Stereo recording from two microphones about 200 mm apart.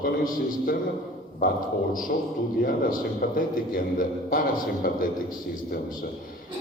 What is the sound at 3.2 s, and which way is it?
A man's voice, 45° left (ahead or behind).